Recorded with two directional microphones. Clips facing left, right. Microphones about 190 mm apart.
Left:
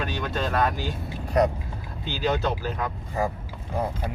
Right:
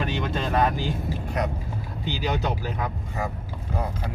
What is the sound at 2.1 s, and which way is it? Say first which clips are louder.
Speech: left 2 dB; 15° right (ahead or behind).